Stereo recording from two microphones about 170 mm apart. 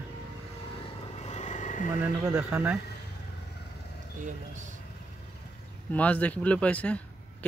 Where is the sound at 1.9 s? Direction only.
5° right (ahead or behind).